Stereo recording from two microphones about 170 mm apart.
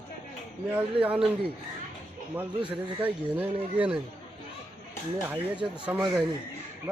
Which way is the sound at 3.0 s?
10° right (ahead or behind).